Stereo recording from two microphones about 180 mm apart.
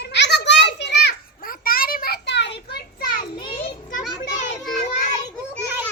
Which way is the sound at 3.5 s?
50° left (ahead or behind).